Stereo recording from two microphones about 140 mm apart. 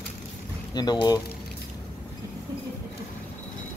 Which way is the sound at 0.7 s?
30° left (ahead or behind).